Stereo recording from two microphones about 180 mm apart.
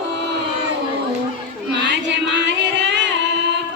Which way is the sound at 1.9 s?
80° right.